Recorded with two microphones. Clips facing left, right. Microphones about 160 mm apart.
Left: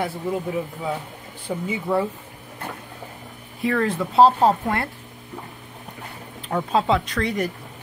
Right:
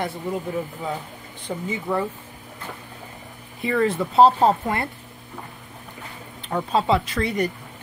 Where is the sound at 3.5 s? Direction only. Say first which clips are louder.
Right 1 dB; centre (ahead or behind).